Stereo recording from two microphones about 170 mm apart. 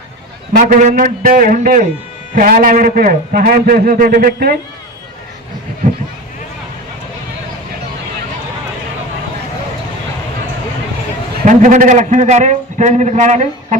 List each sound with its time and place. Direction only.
0.5 s a man's voice: 50° right (ahead or behind)
11.4 s a man's voice: 50° right (ahead or behind)